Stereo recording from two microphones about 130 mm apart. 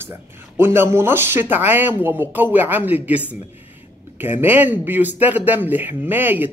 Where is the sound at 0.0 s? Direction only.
15° right (ahead or behind).